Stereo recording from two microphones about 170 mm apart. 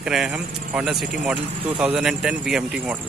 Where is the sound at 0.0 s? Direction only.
5° right (ahead or behind).